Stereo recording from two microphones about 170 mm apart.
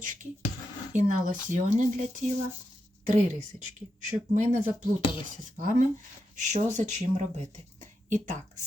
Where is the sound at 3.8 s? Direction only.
45° right (ahead or behind).